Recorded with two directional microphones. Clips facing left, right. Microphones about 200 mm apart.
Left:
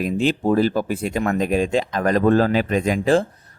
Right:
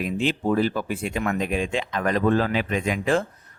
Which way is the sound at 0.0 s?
40° left (ahead or behind).